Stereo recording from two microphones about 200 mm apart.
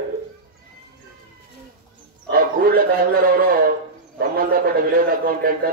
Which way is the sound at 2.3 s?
45° right (ahead or behind).